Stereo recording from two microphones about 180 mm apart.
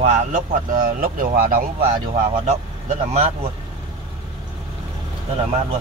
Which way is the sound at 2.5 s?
40° right (ahead or behind).